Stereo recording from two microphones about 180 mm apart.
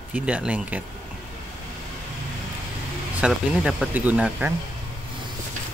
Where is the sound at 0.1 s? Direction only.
5° right (ahead or behind).